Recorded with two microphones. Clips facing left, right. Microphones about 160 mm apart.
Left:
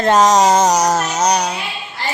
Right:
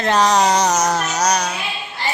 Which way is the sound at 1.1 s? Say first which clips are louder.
Left 2 dB; 30° left (ahead or behind).